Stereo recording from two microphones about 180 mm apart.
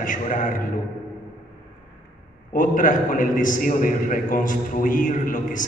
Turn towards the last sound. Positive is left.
turn(degrees=50)  # may be behind; listen again after turning